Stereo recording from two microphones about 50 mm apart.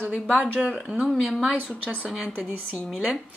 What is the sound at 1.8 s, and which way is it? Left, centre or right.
Speech, right.